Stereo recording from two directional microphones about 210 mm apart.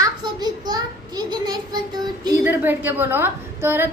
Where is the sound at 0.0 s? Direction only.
20° right (ahead or behind).